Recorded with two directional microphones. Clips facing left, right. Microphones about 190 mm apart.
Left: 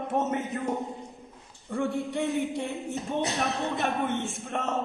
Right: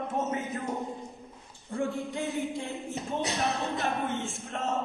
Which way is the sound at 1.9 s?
Centre (ahead or behind).